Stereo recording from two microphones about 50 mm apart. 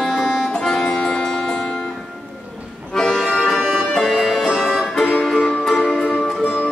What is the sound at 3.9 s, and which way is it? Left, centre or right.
Music, centre.